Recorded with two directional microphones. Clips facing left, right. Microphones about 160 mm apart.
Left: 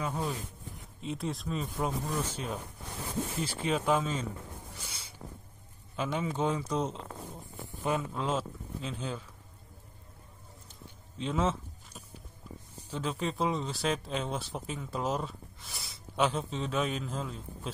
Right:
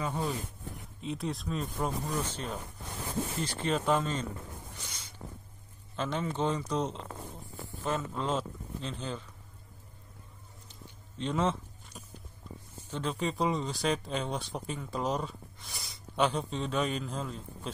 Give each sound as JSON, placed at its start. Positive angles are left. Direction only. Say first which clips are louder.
{"t": 0.0, "sound": "speech", "louder": "right 1 dB", "side_deg": 0}
{"t": 4.7, "sound": "a sound", "louder": "even", "side_deg": 5}
{"t": 5.9, "sound": "speech", "louder": "even", "side_deg": 10}
{"t": 7.6, "sound": "a sound", "louder": "left 2 dB", "side_deg": 15}
{"t": 8.1, "sound": "speech", "louder": "even", "side_deg": 5}
{"t": 11.1, "sound": "speech", "louder": "even", "side_deg": 5}